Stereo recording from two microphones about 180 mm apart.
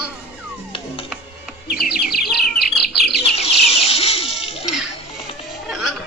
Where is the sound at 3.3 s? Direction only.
35° left (ahead or behind).